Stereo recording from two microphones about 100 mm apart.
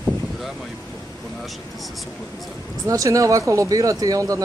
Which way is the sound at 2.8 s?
35° right (ahead or behind).